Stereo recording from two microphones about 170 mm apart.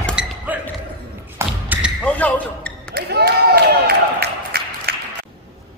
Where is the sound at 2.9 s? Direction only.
70° right (ahead or behind).